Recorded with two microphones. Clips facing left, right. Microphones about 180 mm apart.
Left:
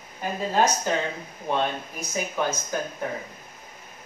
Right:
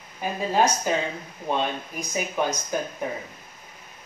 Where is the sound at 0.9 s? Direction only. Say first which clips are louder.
Right 1 dB; 10° right (ahead or behind).